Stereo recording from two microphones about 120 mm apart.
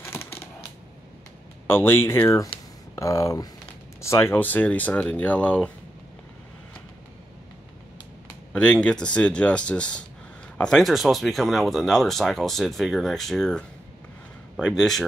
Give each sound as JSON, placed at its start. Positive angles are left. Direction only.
{"t": 0.0, "sound": "a sound", "side_deg": 20}
{"t": 1.7, "sound": "speech", "side_deg": 20}
{"t": 8.5, "sound": "speech", "side_deg": 10}